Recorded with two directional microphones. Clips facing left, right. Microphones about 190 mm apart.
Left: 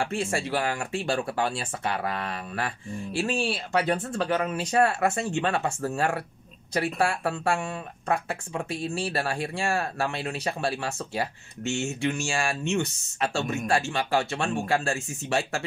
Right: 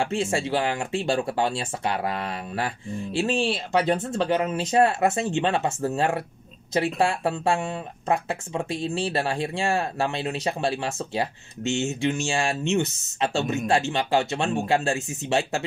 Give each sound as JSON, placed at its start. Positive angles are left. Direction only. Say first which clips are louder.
{"t": 0.0, "sound": "speech", "louder": "right 3 dB", "side_deg": -20}